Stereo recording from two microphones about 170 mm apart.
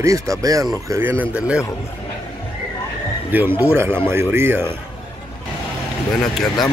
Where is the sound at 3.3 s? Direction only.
10° right (ahead or behind).